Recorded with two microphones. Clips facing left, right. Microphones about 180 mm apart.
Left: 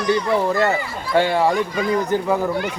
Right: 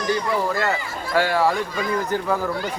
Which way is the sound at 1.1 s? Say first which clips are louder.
Left 3 dB; 20° left (ahead or behind).